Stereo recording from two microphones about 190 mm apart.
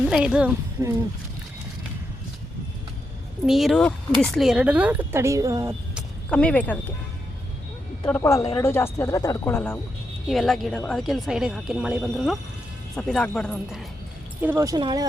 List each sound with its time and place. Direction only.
0.0 s speech: 5° right (ahead or behind)
3.4 s speech: centre (ahead or behind); by 5.7 s 15° right (ahead or behind)
6.3 s speech: 5° left (ahead or behind)
8.0 s speech: 15° left (ahead or behind)
10.2 s speech: centre (ahead or behind)
14.4 s speech: 15° right (ahead or behind)